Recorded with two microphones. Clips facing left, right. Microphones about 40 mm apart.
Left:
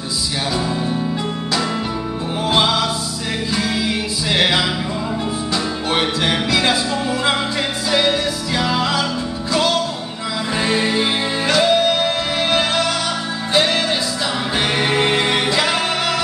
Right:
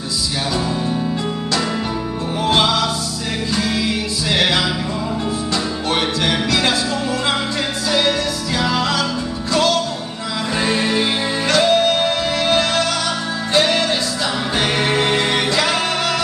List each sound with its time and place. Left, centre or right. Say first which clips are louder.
2.4 s music: right 1 dB; centre
4.3 s music: even; centre
6.7 s music: left 1 dB; left
8.5 s music: even; centre